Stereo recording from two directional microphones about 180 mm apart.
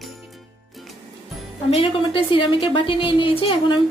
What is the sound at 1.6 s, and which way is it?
A woman's voice, 30° left (ahead or behind).